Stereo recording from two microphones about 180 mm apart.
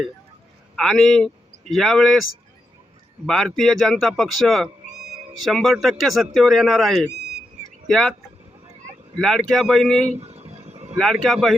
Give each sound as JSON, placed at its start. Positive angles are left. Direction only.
{"t": 0.8, "sound": "a man's voice", "side_deg": 0}
{"t": 3.2, "sound": "a man's voice", "side_deg": 0}
{"t": 9.1, "sound": "a man's voice", "side_deg": 0}
{"t": 10.2, "sound": "a sound", "side_deg": -35}
{"t": 10.9, "sound": "a man's voice", "side_deg": 0}